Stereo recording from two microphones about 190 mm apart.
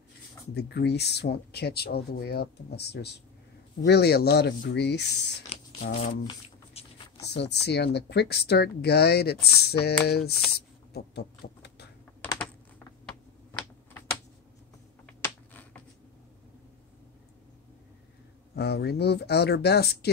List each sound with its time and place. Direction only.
0.6 s speech: 60° left (ahead or behind)
5.5 s a sound: 35° left (ahead or behind)
6.2 s shuffling cards: 30° left (ahead or behind)
7.2 s speech: 60° left (ahead or behind)
10.5 s a sound: 55° left (ahead or behind)
12.4 s typing: 5° left (ahead or behind)
15.2 s computer keyboard: 10° left (ahead or behind)
18.5 s speech: 60° left (ahead or behind)